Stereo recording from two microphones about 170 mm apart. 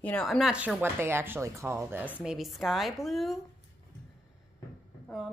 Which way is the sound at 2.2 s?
Centre (ahead or behind).